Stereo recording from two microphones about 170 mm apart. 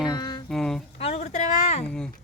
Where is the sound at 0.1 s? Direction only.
25° left (ahead or behind).